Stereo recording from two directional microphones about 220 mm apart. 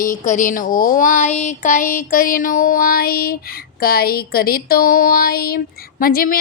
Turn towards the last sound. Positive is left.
turn(degrees=40)  # may be behind; listen again after turning